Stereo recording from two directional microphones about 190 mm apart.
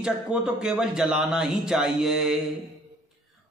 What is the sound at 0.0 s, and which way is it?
A man's voice, 5° right (ahead or behind).